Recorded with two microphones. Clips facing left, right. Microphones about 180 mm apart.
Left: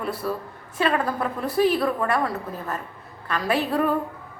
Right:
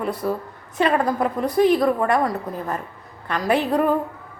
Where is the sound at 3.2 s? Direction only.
20° right (ahead or behind).